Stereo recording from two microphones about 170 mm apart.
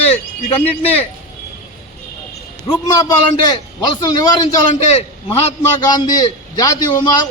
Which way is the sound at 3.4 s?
25° left (ahead or behind).